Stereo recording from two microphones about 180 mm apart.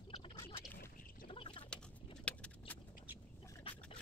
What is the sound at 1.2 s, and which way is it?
Duck, 30° left (ahead or behind).